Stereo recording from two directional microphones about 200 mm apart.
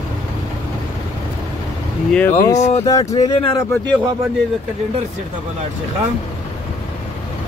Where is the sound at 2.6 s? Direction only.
30° left (ahead or behind).